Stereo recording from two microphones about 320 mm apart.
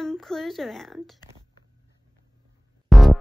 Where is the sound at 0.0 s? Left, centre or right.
Centre.